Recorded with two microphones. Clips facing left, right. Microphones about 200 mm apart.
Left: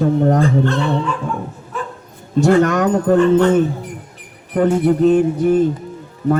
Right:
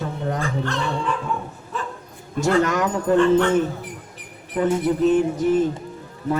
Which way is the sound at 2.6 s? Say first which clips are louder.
Left 6 dB; 60° left (ahead or behind).